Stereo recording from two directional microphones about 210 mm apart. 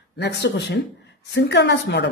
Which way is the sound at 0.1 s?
55° left (ahead or behind).